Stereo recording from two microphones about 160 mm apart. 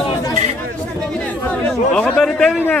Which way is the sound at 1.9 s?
5° left (ahead or behind).